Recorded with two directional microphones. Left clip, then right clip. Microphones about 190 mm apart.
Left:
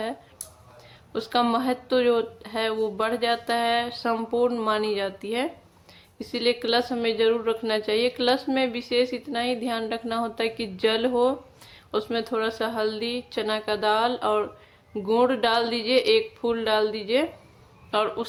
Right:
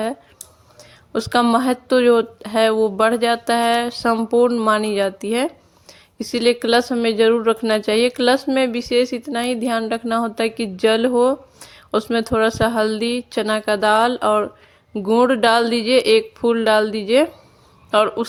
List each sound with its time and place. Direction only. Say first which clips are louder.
1.1 s a woman's voice: right 7 dB; 40° right (ahead or behind)